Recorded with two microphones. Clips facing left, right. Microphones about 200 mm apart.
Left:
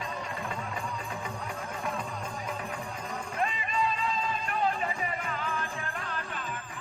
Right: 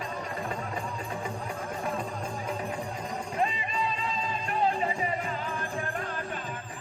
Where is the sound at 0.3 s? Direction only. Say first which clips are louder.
Right 2 dB; 35° right (ahead or behind).